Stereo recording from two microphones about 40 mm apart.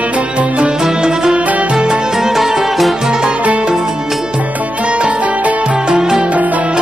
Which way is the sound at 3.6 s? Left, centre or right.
Centre.